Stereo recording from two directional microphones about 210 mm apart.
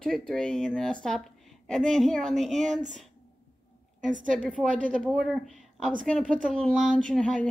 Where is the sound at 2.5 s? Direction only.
35° right (ahead or behind).